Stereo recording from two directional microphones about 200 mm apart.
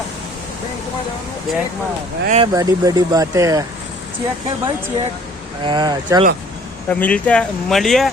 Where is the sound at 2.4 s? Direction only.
15° right (ahead or behind).